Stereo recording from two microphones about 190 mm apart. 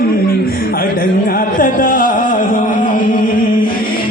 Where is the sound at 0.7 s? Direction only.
50° left (ahead or behind).